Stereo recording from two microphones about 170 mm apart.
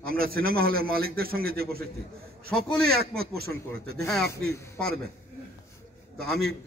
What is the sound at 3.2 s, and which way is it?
Speech, 65° right (ahead or behind).